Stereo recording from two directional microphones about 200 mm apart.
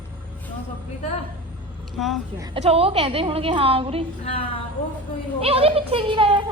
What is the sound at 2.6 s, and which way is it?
A woman's voice, 30° right (ahead or behind).